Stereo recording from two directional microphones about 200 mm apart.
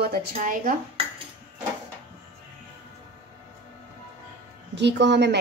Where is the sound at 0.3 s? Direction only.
40° right (ahead or behind).